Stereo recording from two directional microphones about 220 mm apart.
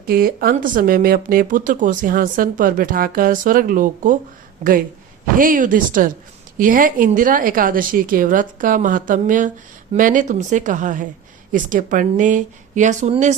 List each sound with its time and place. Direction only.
0.0 s speech: 40° right (ahead or behind)
5.4 s speech: 40° right (ahead or behind)